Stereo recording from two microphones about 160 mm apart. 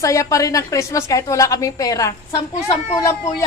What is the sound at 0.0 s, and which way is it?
A woman's voice, 20° left (ahead or behind).